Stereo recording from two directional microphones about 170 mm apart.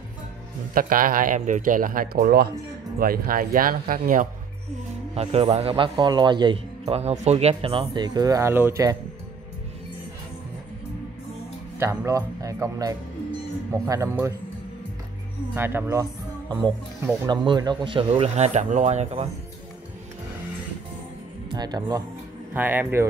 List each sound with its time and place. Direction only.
0.7 s speech: 55° right (ahead or behind)
5.1 s a man's voice: 35° right (ahead or behind); by 8.9 s 15° right (ahead or behind)
11.8 s speech: 15° right (ahead or behind)
15.5 s speech: 15° right (ahead or behind); by 19.2 s 40° right (ahead or behind)
21.5 s speech: 25° right (ahead or behind)
22.5 s speech: 10° right (ahead or behind)